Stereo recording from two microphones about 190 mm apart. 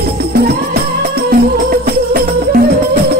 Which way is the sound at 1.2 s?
50° right (ahead or behind).